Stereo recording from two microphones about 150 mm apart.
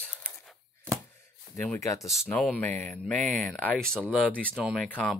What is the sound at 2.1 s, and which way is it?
Speech, 5° left (ahead or behind).